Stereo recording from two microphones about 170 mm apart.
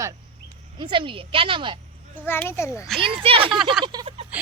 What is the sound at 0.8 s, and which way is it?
Speech, 30° right (ahead or behind).